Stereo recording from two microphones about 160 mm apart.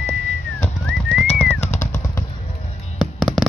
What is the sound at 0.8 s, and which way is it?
Music, 5° left (ahead or behind).